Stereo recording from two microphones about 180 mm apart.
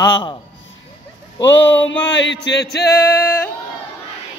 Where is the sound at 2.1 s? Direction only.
80° left.